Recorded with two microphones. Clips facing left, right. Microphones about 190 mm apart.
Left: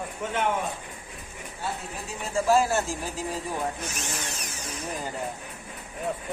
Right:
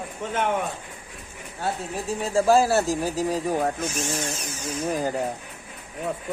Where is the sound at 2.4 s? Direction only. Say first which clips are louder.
Right 4 dB; 35° right (ahead or behind).